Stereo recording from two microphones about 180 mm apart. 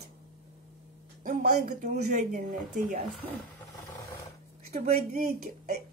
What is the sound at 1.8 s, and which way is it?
Speech, 60° right (ahead or behind).